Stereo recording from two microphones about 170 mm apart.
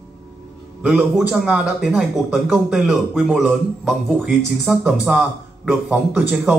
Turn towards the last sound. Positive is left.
turn(degrees=-5)  # may be behind; listen again after turning